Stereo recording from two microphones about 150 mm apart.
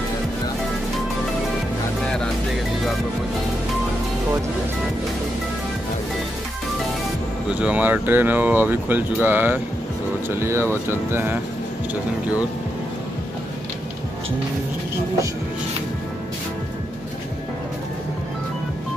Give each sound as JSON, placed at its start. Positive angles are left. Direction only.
{"t": 7.4, "sound": "speech", "side_deg": -10}